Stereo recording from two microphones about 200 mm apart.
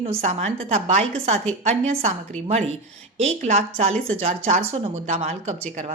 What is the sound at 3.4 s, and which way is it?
A woman's voice, 35° right (ahead or behind).